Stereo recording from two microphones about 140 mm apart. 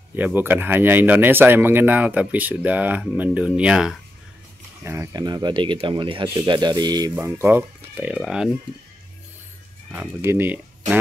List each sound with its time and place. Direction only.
0.1 s speech: 15° right (ahead or behind)
4.8 s speech: 20° right (ahead or behind)
9.8 s speech: 10° right (ahead or behind)